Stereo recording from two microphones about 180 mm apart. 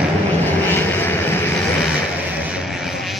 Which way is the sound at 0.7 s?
10° left (ahead or behind).